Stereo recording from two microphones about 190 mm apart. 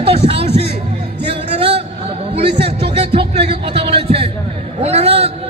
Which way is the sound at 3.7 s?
30° right (ahead or behind).